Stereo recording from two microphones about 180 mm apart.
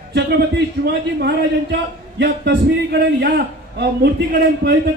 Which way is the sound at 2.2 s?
65° right (ahead or behind).